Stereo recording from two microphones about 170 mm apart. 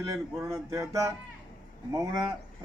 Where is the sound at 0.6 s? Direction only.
20° right (ahead or behind).